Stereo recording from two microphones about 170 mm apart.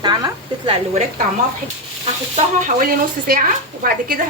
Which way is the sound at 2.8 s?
55° right (ahead or behind).